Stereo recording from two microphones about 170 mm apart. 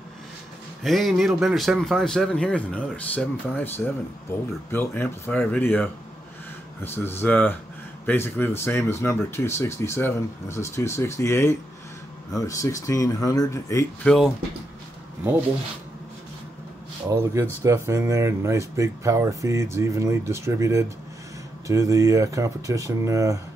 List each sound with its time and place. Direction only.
0.8 s a man's voice: centre (ahead or behind); by 13.8 s 20° left (ahead or behind)
14.0 s a man's voice: 5° left (ahead or behind)
17.1 s speech: 15° right (ahead or behind)